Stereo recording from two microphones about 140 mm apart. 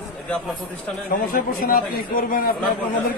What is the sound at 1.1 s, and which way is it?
A man's voice, 80° left.